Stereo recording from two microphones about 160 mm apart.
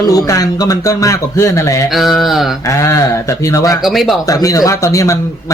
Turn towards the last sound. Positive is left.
turn(degrees=20)  # may be behind; listen again after turning